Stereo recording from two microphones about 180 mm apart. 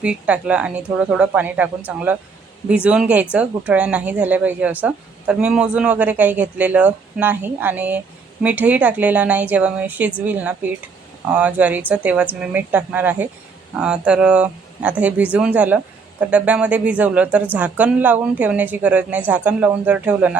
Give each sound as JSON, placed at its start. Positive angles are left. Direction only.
{"t": 0.0, "sound": "speech", "side_deg": -5}